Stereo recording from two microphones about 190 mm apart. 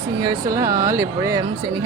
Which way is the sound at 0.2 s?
20° right (ahead or behind).